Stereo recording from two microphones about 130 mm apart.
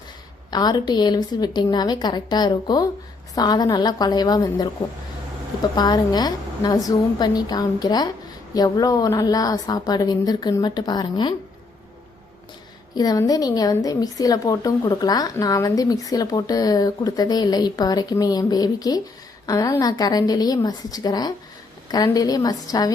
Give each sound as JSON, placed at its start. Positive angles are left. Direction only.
{"t": 0.5, "sound": "a woman's voice", "side_deg": 30}
{"t": 5.7, "sound": "a woman's voice", "side_deg": 30}
{"t": 12.9, "sound": "a woman's voice", "side_deg": 30}